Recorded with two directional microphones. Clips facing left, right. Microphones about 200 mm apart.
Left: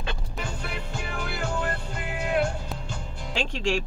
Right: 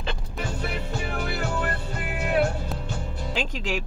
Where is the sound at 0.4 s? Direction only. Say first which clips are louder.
Right 5 dB; 55° right (ahead or behind).